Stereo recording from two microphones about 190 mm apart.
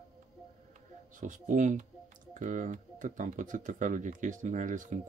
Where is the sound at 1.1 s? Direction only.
45° right (ahead or behind).